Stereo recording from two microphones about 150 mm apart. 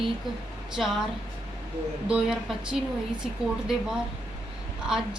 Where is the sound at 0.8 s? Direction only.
5° right (ahead or behind).